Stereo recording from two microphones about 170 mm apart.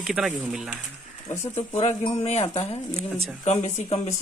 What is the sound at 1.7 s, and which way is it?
Speech, 45° left (ahead or behind).